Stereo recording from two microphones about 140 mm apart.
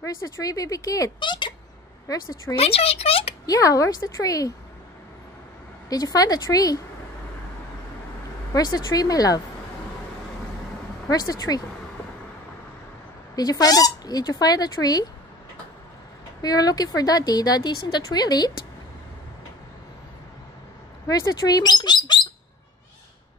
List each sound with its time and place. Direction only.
0.0 s speech: 25° left (ahead or behind)
2.5 s speech: 45° left (ahead or behind)
3.4 s speech: 25° left (ahead or behind)
5.9 s speech: 25° left (ahead or behind)
8.5 s speech: 30° left (ahead or behind)
11.1 s speech: 25° left (ahead or behind)
13.4 s speech: 25° left (ahead or behind)
16.3 s speech: 25° left (ahead or behind)
21.1 s speech: 25° left (ahead or behind)